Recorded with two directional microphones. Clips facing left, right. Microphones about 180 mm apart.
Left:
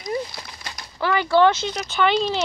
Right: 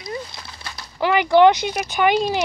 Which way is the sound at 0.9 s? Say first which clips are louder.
Right 3 dB; 15° right (ahead or behind).